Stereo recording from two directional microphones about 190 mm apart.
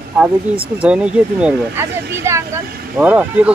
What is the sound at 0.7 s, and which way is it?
Speech, 5° right (ahead or behind).